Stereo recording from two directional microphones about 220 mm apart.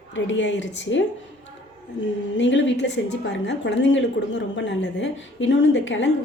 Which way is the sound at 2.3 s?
55° left (ahead or behind).